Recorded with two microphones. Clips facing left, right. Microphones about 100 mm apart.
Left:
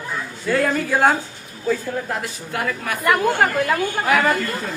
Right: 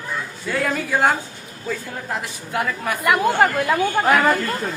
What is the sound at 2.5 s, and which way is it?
Speech, 25° right (ahead or behind).